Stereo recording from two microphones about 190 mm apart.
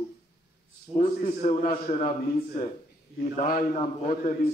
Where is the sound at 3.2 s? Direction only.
40° left (ahead or behind).